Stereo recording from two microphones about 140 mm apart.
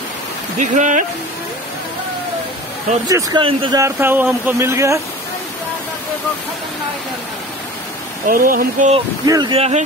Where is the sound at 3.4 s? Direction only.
40° right (ahead or behind).